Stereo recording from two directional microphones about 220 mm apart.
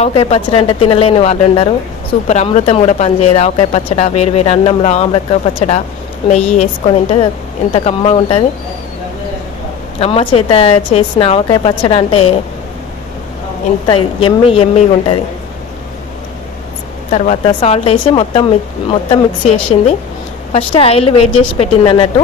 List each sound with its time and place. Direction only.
0.0 s a woman's voice: 25° left (ahead or behind)
9.9 s a woman's voice: 25° left (ahead or behind)
13.8 s a woman's voice: 25° left (ahead or behind)
17.1 s a woman's voice: 30° left (ahead or behind)